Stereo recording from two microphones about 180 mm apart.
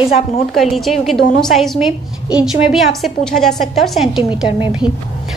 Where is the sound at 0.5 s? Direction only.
Centre (ahead or behind).